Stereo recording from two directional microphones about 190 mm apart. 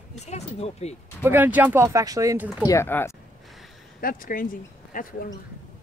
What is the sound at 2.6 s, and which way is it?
Speech, 15° left (ahead or behind).